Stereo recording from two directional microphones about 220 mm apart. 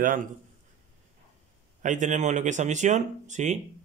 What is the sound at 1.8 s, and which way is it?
Speech, 35° right (ahead or behind).